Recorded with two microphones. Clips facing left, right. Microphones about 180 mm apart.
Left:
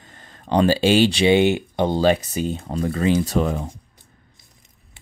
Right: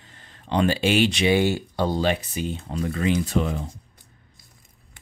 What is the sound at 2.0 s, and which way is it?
Speech, 40° left (ahead or behind).